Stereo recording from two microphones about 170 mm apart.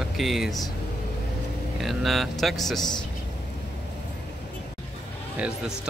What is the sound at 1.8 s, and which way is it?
Speech, centre (ahead or behind).